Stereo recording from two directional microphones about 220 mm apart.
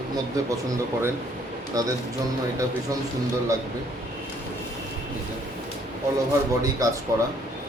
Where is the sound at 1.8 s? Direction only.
15° right (ahead or behind).